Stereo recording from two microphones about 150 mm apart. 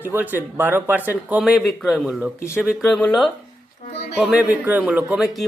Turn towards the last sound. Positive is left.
turn(degrees=-5)  # may be behind; listen again after turning